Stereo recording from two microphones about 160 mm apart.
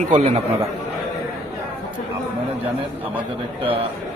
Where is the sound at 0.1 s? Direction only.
45° right (ahead or behind).